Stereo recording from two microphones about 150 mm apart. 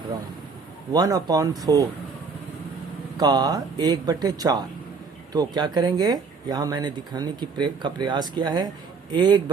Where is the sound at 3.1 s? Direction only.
30° right (ahead or behind).